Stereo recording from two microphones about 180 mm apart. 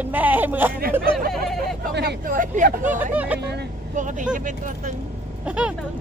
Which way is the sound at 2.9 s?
10° right (ahead or behind).